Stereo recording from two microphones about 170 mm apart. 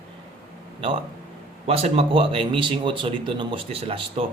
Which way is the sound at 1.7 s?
35° right (ahead or behind).